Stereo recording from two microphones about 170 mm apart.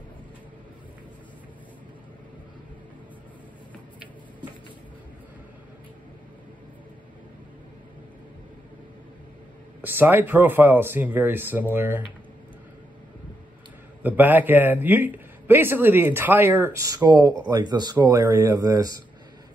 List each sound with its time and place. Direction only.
9.8 s a man's voice: 10° right (ahead or behind)
14.0 s a man's voice: 10° right (ahead or behind)